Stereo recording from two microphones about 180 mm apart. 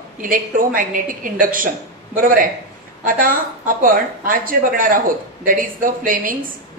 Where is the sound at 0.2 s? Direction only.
50° right (ahead or behind).